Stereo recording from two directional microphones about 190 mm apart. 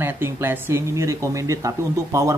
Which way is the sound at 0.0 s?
10° right (ahead or behind).